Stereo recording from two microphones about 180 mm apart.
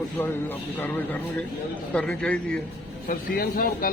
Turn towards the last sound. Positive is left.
turn(degrees=55)  # may be behind; listen again after turning